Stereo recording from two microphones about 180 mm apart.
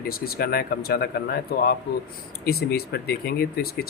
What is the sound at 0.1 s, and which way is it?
Speech, 55° left (ahead or behind).